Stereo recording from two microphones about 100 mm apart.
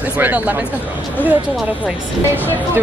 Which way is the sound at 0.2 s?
15° right (ahead or behind).